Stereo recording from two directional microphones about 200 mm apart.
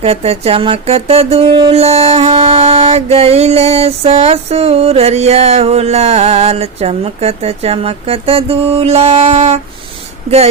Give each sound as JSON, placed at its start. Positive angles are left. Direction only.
{"t": 0.0, "sound": "music", "side_deg": -30}
{"t": 1.7, "sound": "mantra", "side_deg": -30}